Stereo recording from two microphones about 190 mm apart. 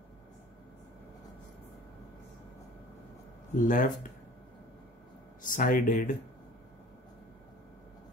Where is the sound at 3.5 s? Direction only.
45° left (ahead or behind).